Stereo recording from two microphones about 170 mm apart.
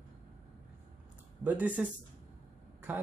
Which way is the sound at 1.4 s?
10° right (ahead or behind).